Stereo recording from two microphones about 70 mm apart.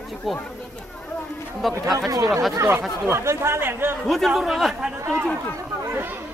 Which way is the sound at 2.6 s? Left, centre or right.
Right.